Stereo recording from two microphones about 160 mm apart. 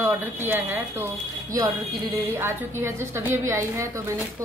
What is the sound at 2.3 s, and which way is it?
A woman's voice, 15° right (ahead or behind).